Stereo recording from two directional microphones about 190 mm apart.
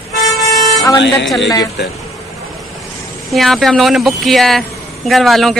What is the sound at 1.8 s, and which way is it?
Speech, 60° left (ahead or behind).